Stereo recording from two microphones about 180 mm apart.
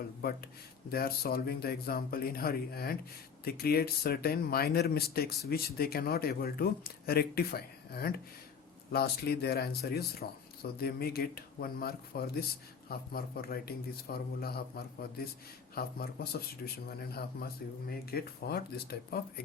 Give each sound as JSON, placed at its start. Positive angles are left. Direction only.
{"t": 0.2, "sound": "speech", "side_deg": 60}